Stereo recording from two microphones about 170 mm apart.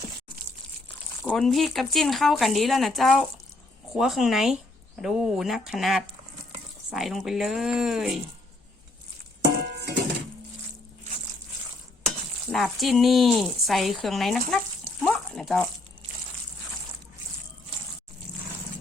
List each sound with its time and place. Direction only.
1.2 s speech: 5° left (ahead or behind)
9.6 s dishes: 80° right
12.5 s speech: centre (ahead or behind)
15.0 s a sound: centre (ahead or behind)